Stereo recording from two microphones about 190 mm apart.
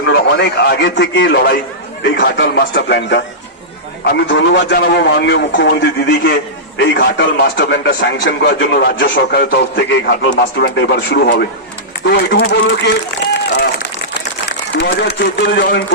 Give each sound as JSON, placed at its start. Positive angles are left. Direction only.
{"t": 0.1, "sound": "a man's voice", "side_deg": 65}
{"t": 14.8, "sound": "a man's voice", "side_deg": 65}